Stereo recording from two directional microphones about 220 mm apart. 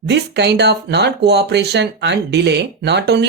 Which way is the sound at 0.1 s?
50° right (ahead or behind).